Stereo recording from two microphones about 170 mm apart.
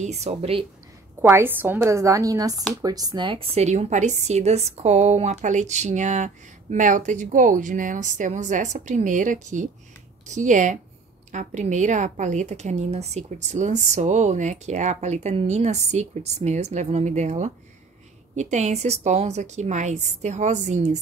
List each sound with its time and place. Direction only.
0.0 s speech: 40° right (ahead or behind)
1.2 s a woman's voice: 10° right (ahead or behind); by 21.0 s 40° right (ahead or behind)